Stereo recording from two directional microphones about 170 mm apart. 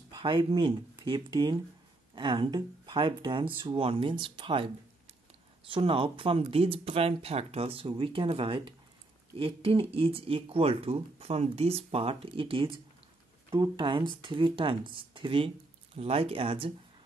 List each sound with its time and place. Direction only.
0.1 s speech: 30° right (ahead or behind)